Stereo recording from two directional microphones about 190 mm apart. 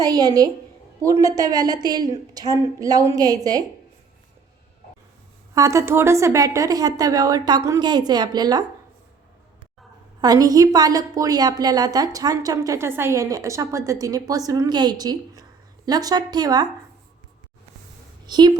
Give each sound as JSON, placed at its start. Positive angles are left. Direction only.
{"t": 0.0, "sound": "a woman's voice", "side_deg": -20}
{"t": 5.5, "sound": "a woman's voice", "side_deg": -15}
{"t": 10.2, "sound": "a woman's voice", "side_deg": -20}
{"t": 18.3, "sound": "a woman's voice", "side_deg": -25}